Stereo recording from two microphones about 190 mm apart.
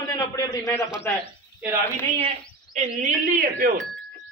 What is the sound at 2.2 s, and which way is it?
Speech, 35° right (ahead or behind).